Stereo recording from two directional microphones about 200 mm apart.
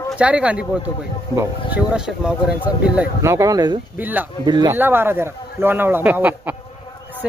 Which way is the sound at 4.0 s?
10° right (ahead or behind).